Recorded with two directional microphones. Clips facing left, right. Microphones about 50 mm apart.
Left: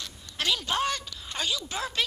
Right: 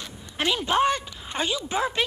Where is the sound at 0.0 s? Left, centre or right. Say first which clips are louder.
Right 4 dB; right.